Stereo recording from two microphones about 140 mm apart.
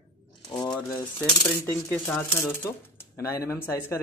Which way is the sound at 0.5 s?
30° left (ahead or behind).